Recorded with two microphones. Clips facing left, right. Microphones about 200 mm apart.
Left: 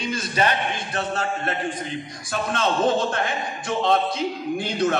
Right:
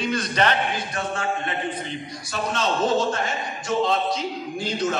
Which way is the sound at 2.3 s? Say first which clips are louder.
Left 1 dB; 55° left (ahead or behind).